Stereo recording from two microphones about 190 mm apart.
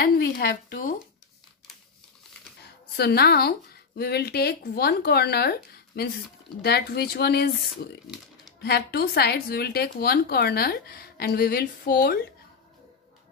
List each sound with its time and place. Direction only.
0.0 s speech: 55° left (ahead or behind)
2.6 s a woman's voice: 60° left (ahead or behind)